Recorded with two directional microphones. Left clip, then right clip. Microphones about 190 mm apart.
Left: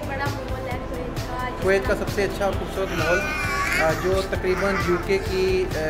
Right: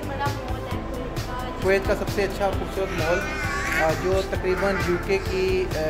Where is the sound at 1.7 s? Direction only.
15° right (ahead or behind).